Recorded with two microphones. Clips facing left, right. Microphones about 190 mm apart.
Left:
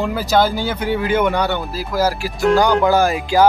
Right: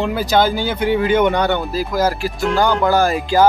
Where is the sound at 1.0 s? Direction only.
5° left (ahead or behind).